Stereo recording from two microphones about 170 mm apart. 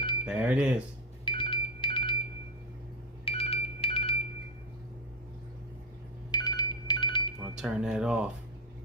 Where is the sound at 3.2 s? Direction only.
35° left (ahead or behind).